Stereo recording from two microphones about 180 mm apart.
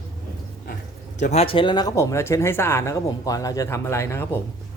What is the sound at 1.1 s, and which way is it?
Speech, 40° left (ahead or behind).